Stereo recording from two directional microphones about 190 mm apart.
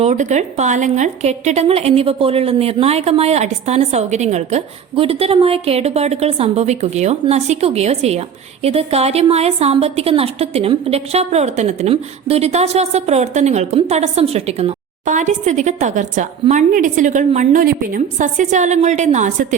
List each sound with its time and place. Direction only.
0.0 s a woman's voice: 40° right (ahead or behind)